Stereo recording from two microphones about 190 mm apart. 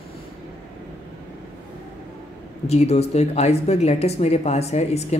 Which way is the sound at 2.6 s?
35° left (ahead or behind).